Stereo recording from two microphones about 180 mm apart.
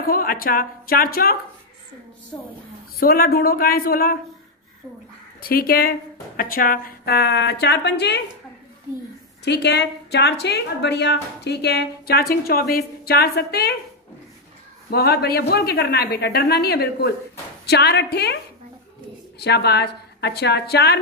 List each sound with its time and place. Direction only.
0.0 s a woman's voice: 55° left (ahead or behind)
3.0 s a woman's voice: 55° left (ahead or behind)
5.4 s a woman's voice: 55° left (ahead or behind)
9.4 s a woman's voice: 70° left (ahead or behind)
14.9 s a woman's voice: 60° left (ahead or behind)